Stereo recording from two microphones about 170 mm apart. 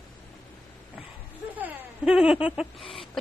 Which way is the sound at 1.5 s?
10° right (ahead or behind).